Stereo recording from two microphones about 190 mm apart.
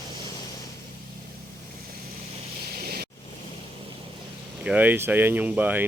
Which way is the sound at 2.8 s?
55° right (ahead or behind).